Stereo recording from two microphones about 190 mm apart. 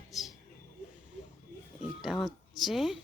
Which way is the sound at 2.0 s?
Centre (ahead or behind).